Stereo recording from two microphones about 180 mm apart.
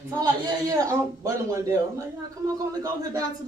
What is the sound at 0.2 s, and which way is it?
A woman's voice, 20° right (ahead or behind).